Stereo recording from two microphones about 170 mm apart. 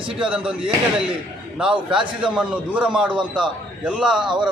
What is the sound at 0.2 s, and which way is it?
Speech, 5° right (ahead or behind).